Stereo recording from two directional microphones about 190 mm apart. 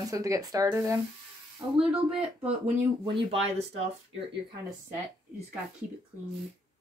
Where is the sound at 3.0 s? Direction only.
30° right (ahead or behind).